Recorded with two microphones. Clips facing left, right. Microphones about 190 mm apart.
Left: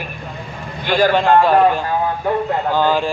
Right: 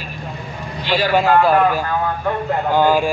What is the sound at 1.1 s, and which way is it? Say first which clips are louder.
Speech: right 2 dB; 5° right (ahead or behind).